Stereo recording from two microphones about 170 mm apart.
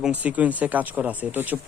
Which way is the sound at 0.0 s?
10° right (ahead or behind).